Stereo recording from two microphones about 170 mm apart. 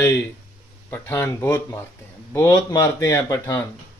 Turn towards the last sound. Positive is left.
turn(degrees=20)  # may be behind; listen again after turning